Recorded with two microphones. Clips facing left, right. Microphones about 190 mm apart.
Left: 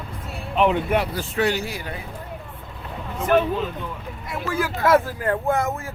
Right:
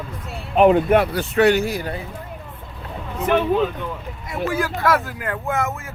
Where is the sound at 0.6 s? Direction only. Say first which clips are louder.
Right 6 dB; 50° right (ahead or behind).